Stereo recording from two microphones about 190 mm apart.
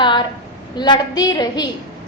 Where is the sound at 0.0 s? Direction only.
25° left (ahead or behind).